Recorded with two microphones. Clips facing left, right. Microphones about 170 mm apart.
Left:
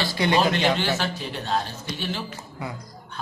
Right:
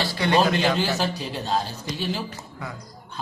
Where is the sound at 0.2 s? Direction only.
20° left (ahead or behind).